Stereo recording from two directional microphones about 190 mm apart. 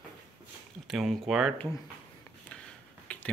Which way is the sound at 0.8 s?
Centre (ahead or behind).